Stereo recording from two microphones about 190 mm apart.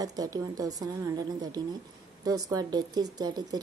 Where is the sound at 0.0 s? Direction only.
20° right (ahead or behind).